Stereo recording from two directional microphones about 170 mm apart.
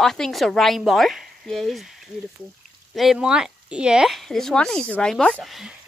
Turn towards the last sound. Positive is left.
turn(degrees=0)  # may be behind; listen again after turning